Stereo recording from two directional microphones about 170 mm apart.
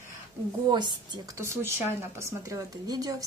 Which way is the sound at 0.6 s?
25° right (ahead or behind).